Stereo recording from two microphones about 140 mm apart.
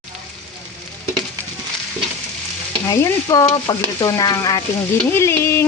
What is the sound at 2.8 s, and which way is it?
Speech, 25° left (ahead or behind).